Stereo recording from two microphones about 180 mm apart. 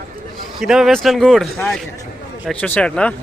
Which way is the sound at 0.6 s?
Centre (ahead or behind).